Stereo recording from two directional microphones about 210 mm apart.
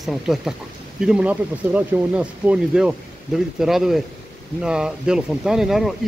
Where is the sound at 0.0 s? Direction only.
Centre (ahead or behind).